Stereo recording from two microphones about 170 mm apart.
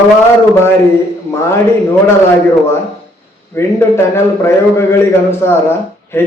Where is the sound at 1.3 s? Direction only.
15° left (ahead or behind).